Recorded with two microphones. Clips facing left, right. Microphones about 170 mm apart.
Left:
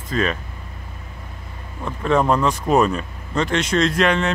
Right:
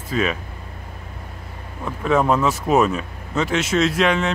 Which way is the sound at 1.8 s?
5° right (ahead or behind).